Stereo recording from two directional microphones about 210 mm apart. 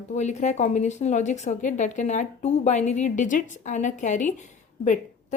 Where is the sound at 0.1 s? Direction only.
35° left (ahead or behind).